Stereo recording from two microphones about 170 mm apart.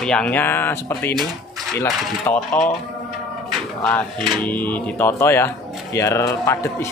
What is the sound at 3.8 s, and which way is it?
Speech, 10° left (ahead or behind).